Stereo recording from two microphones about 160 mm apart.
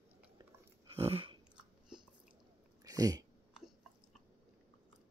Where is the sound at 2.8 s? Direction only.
20° right (ahead or behind).